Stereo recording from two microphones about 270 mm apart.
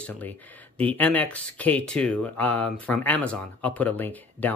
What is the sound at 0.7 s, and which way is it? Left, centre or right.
Speech, centre.